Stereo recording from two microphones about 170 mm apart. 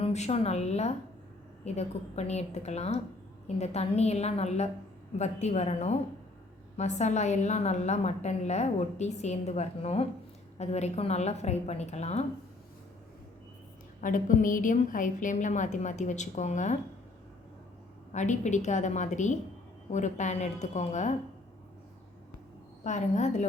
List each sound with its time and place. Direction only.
0.0 s a woman's voice: 40° left (ahead or behind)
14.0 s a woman's voice: 50° left (ahead or behind)
18.1 s a woman's voice: 45° left (ahead or behind)
22.8 s a woman's voice: 45° left (ahead or behind)